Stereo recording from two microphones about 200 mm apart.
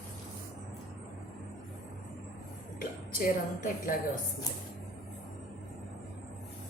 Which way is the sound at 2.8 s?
45° left (ahead or behind).